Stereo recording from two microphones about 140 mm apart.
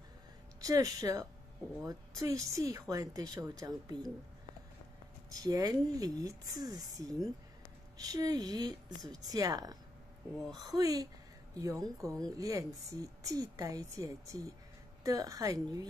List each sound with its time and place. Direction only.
0.6 s speech: 25° right (ahead or behind)
5.4 s speech: 25° right (ahead or behind)